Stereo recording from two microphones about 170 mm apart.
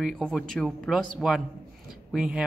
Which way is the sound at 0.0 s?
5° left (ahead or behind).